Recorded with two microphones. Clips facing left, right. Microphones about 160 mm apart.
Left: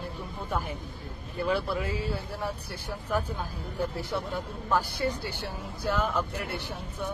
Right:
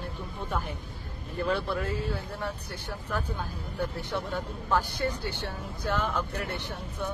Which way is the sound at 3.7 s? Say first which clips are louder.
Left 1 dB; 10° left (ahead or behind).